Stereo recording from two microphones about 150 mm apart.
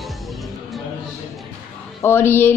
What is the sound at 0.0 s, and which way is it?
Music, centre (ahead or behind).